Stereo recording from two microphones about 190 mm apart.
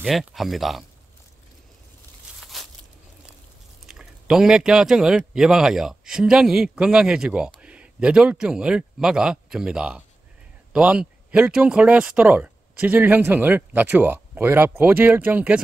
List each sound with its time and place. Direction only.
0.0 s speech: centre (ahead or behind)
2.4 s a sound: centre (ahead or behind)
3.8 s speech: 5° right (ahead or behind)